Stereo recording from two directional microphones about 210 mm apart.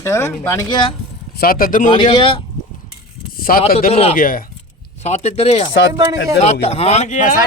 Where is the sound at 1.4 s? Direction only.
45° left (ahead or behind).